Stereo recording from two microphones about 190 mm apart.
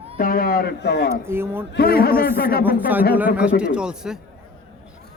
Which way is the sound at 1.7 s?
55° left (ahead or behind).